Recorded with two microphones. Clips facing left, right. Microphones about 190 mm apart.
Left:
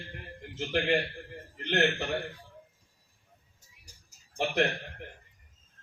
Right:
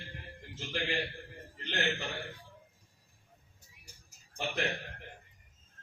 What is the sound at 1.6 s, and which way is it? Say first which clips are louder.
Speech: left 7 dB; 65° left (ahead or behind).